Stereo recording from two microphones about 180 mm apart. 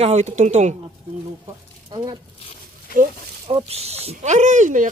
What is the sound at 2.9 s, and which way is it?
Speech, 55° left (ahead or behind).